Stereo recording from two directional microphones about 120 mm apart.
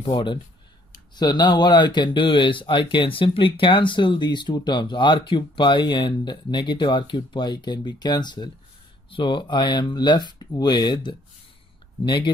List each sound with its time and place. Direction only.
0.0 s speech: 40° left (ahead or behind)